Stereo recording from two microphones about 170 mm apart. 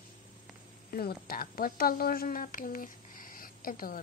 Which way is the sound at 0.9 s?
60° left (ahead or behind).